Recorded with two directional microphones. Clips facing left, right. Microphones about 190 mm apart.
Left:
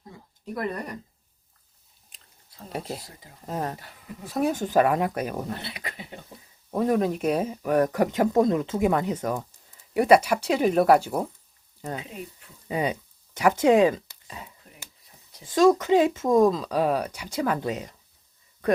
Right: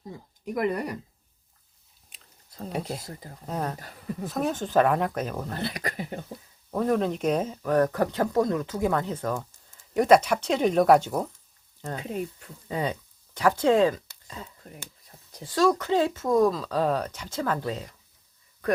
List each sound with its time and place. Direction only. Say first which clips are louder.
0.4 s speech: right 4 dB; 15° right (ahead or behind)
2.7 s speech: even; centre (ahead or behind)
5.6 s speech: right 7 dB; 45° right (ahead or behind)
6.7 s speech: left 1 dB; 10° left (ahead or behind)
12.6 s speech: left 2 dB; 15° left (ahead or behind)